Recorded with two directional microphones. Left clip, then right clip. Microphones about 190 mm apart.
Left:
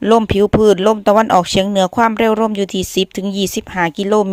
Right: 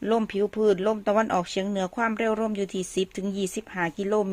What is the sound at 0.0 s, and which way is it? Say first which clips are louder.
Speech: left 13 dB; 35° left (ahead or behind).